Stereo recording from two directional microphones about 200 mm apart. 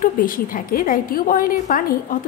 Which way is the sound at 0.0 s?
45° left (ahead or behind).